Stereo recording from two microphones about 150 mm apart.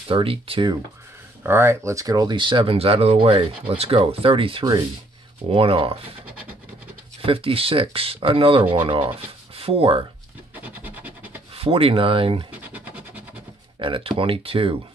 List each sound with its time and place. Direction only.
0.1 s speech: 35° right (ahead or behind)
1.4 s speech: 15° right (ahead or behind); by 5.9 s 40° right (ahead or behind)
7.2 s speech: 40° right (ahead or behind)
10.5 s scratch: 10° right (ahead or behind)
11.5 s speech: 40° right (ahead or behind)
12.7 s scratch: 10° right (ahead or behind)
13.7 s speech: 35° right (ahead or behind)